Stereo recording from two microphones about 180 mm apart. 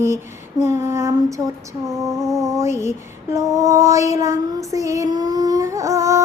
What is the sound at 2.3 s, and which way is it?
Child singing, 15° right (ahead or behind).